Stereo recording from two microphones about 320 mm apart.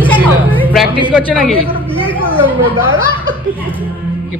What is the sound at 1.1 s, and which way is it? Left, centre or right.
Speech, centre.